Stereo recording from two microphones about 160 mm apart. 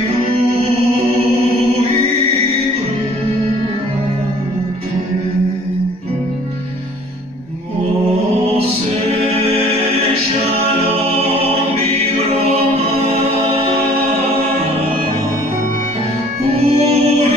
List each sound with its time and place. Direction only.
16.6 s music: 40° right (ahead or behind)